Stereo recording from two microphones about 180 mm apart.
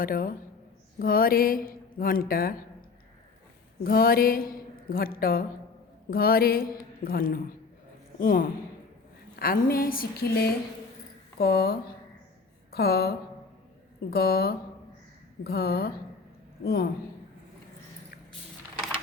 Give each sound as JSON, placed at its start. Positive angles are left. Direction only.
{"t": 0.0, "sound": "speech", "side_deg": 50}
{"t": 3.8, "sound": "a woman's voice", "side_deg": 55}